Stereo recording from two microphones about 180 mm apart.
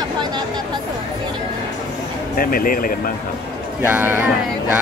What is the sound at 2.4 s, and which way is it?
Speech, 55° left (ahead or behind).